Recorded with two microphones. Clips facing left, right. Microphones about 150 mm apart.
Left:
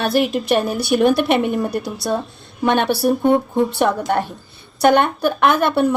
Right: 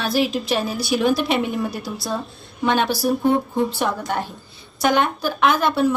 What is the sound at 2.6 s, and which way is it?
Speech, 60° left (ahead or behind).